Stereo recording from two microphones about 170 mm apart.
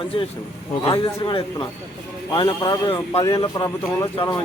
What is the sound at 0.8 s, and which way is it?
Speech, 30° left (ahead or behind).